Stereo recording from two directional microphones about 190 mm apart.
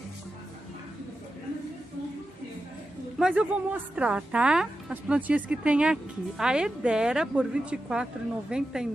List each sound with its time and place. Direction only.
3.2 s speech: 5° right (ahead or behind)